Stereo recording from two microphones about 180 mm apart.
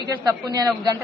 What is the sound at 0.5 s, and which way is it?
Speech, 20° right (ahead or behind).